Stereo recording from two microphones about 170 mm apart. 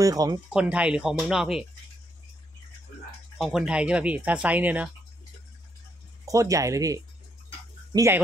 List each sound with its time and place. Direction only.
0.0 s speech: 20° right (ahead or behind)
0.5 s speech: 5° right (ahead or behind)
3.3 s speech: centre (ahead or behind)
6.2 s speech: 20° right (ahead or behind)